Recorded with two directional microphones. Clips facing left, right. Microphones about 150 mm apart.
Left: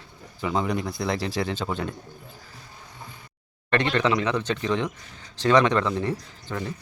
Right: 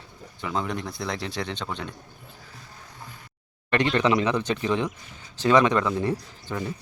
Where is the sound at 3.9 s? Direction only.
15° right (ahead or behind).